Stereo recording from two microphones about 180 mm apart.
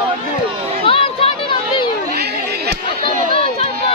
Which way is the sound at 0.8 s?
30° left (ahead or behind).